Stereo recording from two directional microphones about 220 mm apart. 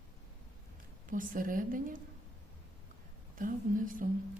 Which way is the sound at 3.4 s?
40° right (ahead or behind).